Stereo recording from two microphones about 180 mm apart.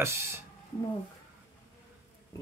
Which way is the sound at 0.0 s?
15° right (ahead or behind).